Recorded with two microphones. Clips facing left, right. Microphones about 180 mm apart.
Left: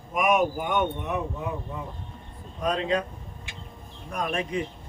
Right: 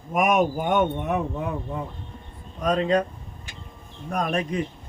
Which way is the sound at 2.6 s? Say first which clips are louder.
Right 4 dB; 45° right (ahead or behind).